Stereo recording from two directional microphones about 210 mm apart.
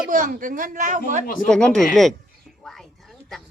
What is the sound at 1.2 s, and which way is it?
Speech, 40° left (ahead or behind).